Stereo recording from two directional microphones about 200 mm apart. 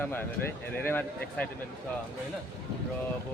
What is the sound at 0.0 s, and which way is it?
Speech, 10° left (ahead or behind).